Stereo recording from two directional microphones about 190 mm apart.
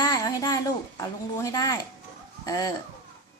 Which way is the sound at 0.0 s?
20° left (ahead or behind).